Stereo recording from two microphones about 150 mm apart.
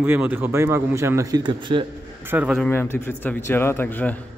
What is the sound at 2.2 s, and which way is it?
Speech, 15° right (ahead or behind).